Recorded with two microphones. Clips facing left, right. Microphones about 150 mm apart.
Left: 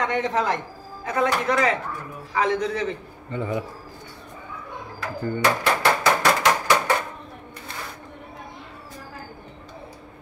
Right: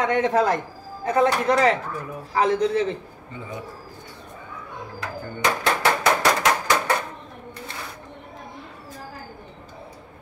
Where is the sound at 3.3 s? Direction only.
70° left (ahead or behind).